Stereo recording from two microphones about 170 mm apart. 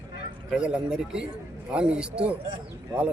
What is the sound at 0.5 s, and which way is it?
Speech, 5° right (ahead or behind).